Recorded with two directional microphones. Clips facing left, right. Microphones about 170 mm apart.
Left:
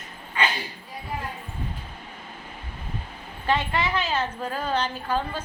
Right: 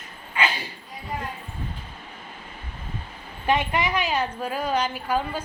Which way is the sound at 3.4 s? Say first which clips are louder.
Right 2 dB; 15° right (ahead or behind).